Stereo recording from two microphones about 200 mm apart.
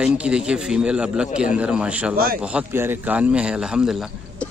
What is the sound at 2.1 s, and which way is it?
Speech, 45° right (ahead or behind).